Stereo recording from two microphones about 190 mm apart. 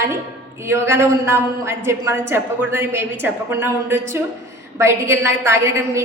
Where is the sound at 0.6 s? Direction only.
15° right (ahead or behind).